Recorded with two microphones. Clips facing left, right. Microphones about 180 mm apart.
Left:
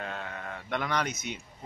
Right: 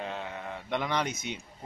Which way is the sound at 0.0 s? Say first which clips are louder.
Right 1 dB; 15° right (ahead or behind).